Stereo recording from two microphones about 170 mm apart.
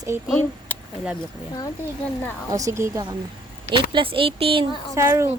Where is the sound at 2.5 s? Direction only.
20° right (ahead or behind).